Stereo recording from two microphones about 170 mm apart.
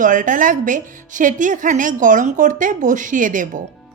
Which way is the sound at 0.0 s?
50° right (ahead or behind).